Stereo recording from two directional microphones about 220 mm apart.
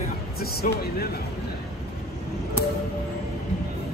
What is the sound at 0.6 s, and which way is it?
Speech, 40° left (ahead or behind).